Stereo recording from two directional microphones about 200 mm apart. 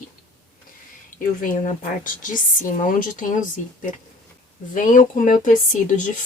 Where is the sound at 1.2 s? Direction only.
40° left (ahead or behind).